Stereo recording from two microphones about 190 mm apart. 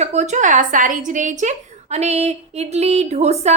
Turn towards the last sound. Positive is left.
turn(degrees=-35)  # may be behind; listen again after turning